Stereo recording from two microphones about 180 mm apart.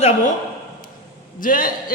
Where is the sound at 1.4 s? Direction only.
50° left (ahead or behind).